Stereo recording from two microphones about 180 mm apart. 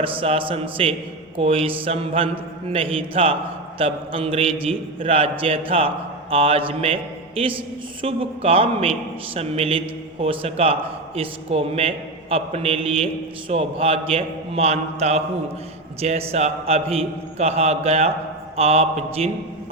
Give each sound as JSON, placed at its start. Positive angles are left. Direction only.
{"t": 0.0, "sound": "a man's voice", "side_deg": -30}